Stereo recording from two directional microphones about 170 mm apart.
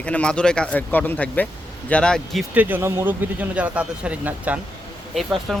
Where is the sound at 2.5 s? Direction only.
10° right (ahead or behind).